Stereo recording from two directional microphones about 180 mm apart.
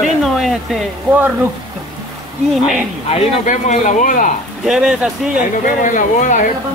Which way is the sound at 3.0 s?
40° left (ahead or behind).